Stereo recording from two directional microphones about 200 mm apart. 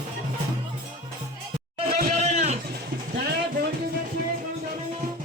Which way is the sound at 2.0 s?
40° right (ahead or behind).